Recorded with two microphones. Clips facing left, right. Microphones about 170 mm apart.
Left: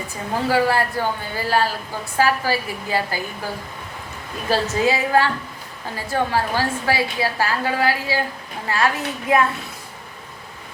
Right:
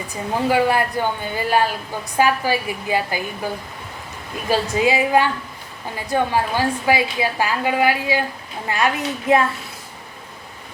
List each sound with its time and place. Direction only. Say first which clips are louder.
0.4 s a woman's voice: right 1 dB; 20° right (ahead or behind)
4.4 s a woman's voice: right 1 dB; 15° right (ahead or behind)